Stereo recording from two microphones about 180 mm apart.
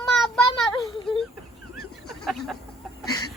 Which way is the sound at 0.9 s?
30° left (ahead or behind).